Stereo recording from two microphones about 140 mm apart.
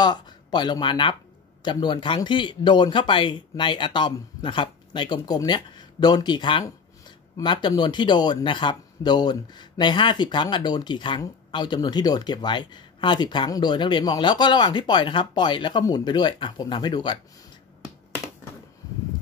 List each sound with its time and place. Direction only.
0.0 s speech: 30° left (ahead or behind)